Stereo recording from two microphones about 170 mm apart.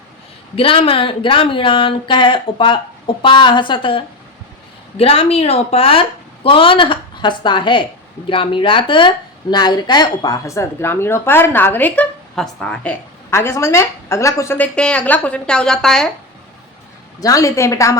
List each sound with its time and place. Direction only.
0.5 s a woman's voice: 35° left (ahead or behind); by 16.0 s 5° left (ahead or behind)
17.2 s speech: 20° left (ahead or behind)